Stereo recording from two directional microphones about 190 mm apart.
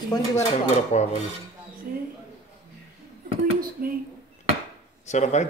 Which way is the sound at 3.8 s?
45° right (ahead or behind).